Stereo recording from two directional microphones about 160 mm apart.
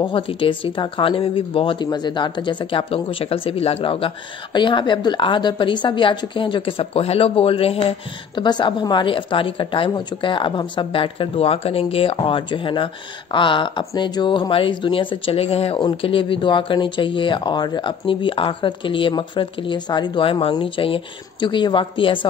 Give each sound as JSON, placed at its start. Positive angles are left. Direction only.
{"t": 0.0, "sound": "speech", "side_deg": 35}